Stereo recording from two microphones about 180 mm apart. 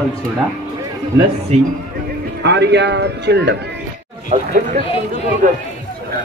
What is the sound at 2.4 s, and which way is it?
A man's voice, 70° right (ahead or behind).